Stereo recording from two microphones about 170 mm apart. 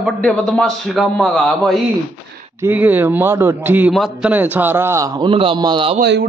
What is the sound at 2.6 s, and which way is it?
A man's voice, 10° right (ahead or behind).